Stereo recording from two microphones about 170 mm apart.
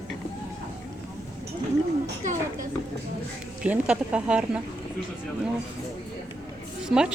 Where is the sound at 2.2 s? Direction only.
45° right (ahead or behind).